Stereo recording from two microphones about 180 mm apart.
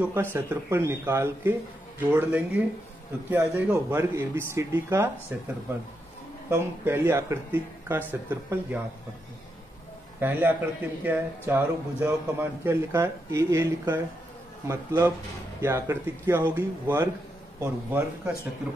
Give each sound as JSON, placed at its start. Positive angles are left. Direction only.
{"t": 0.1, "sound": "a man's voice", "side_deg": -15}
{"t": 6.5, "sound": "a man's voice", "side_deg": -10}
{"t": 10.2, "sound": "a man's voice", "side_deg": -10}